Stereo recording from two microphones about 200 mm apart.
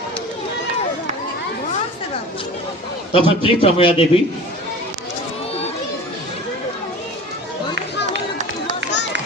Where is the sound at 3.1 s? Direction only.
25° left (ahead or behind).